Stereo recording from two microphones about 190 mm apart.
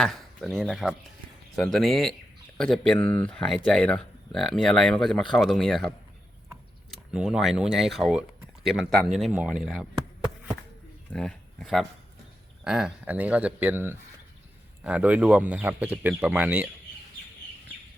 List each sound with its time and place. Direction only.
0.0 s speech: centre (ahead or behind)
6.9 s speech: 5° right (ahead or behind)
11.1 s speech: 5° left (ahead or behind)